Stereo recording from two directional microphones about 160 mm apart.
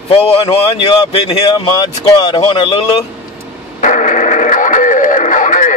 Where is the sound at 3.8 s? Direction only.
50° left (ahead or behind).